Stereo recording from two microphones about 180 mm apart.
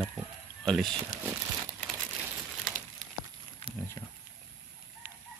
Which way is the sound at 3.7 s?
30° right (ahead or behind).